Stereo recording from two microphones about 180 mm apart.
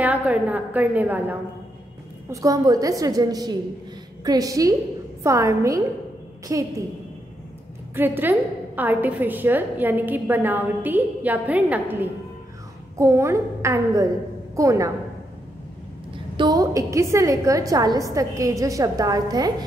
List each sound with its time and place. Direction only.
0.0 s a woman's voice: 10° right (ahead or behind)
7.9 s a woman's voice: 10° right (ahead or behind)
16.3 s a woman's voice: 20° right (ahead or behind)